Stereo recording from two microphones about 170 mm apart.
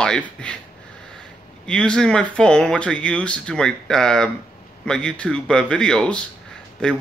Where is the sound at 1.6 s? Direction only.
5° left (ahead or behind).